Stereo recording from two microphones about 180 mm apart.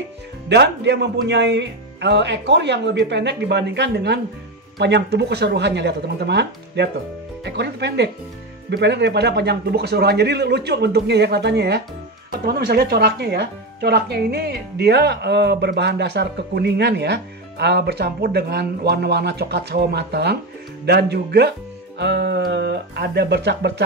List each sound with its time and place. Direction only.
0.5 s speech: 70° right (ahead or behind)